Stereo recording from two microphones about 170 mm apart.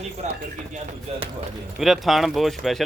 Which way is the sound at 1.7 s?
Centre (ahead or behind).